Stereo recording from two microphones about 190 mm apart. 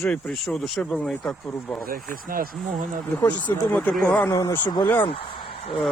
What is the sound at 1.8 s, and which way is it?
Speech, 50° right (ahead or behind).